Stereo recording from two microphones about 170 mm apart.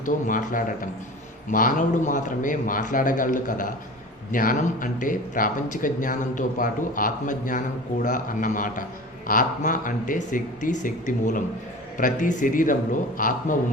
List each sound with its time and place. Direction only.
0.0 s speech: 50° left (ahead or behind)